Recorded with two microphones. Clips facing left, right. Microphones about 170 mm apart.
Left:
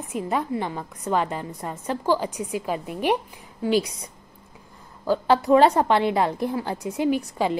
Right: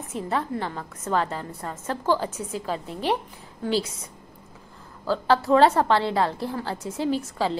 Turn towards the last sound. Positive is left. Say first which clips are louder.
# left 2 dB
turn(degrees=15)  # may be behind; listen again after turning